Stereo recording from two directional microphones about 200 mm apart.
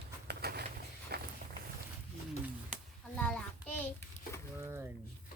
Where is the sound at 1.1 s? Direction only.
55° right (ahead or behind).